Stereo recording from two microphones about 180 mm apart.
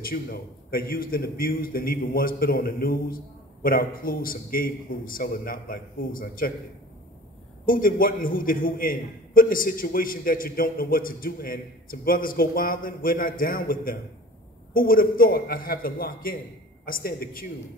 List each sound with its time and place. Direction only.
0.0 s a man's voice: 55° left (ahead or behind)
7.6 s a man's voice: 50° left (ahead or behind)